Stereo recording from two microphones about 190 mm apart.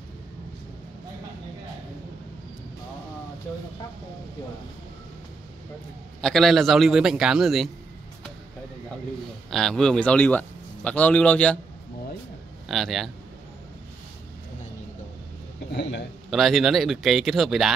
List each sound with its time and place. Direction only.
6.2 s speech: centre (ahead or behind)
9.5 s a man's voice: centre (ahead or behind)
12.6 s speech: centre (ahead or behind)
15.7 s a man's voice: 65° left (ahead or behind)
16.3 s speech: centre (ahead or behind)